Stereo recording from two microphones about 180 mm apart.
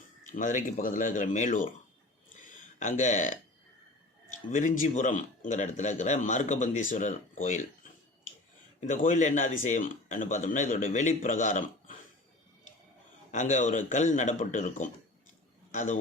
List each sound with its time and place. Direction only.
0.3 s speech: 45° left (ahead or behind)
2.4 s a sound: 45° left (ahead or behind)
4.3 s speech: 45° left (ahead or behind)
8.8 s speech: 45° left (ahead or behind)
13.3 s a man's voice: 45° left (ahead or behind)